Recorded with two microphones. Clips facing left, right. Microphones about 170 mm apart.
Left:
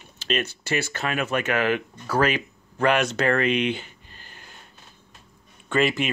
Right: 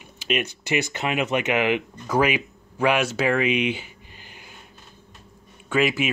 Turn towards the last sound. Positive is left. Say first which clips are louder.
# even
turn(degrees=-5)  # may be behind; listen again after turning